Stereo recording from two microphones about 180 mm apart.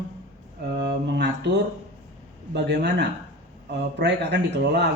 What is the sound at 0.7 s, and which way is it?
Speech, 65° right (ahead or behind).